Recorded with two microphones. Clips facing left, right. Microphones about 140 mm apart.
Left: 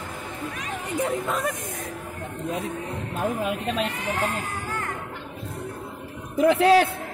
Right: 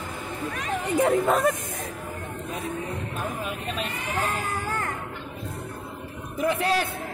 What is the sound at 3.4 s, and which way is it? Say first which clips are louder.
Speech: left 5 dB; 90° left.